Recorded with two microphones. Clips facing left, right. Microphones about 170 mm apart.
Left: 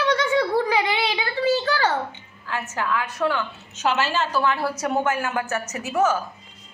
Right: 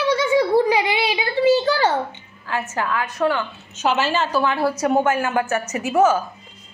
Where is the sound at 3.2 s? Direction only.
25° right (ahead or behind).